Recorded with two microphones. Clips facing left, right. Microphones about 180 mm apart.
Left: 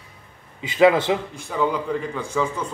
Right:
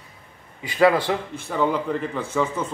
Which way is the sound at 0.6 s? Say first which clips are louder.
Left 2 dB; 15° left (ahead or behind).